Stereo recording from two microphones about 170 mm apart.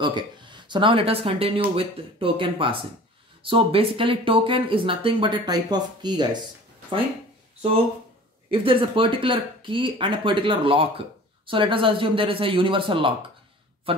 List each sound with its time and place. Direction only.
0.0 s speech: 25° right (ahead or behind)
8.5 s speech: 30° right (ahead or behind)